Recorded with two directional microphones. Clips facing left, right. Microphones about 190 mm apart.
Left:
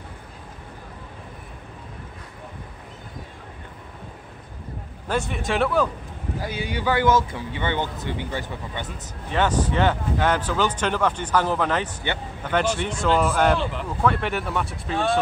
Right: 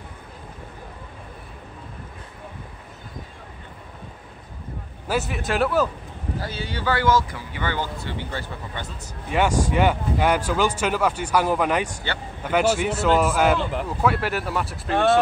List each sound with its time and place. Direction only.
5.0 s a man's voice: 5° right (ahead or behind)
6.4 s speech: 15° left (ahead or behind)
9.3 s a man's voice: 10° right (ahead or behind)